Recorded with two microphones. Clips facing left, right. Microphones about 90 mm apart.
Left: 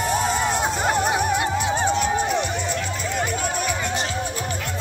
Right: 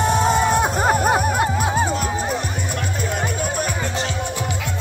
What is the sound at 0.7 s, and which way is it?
Music, 45° right (ahead or behind).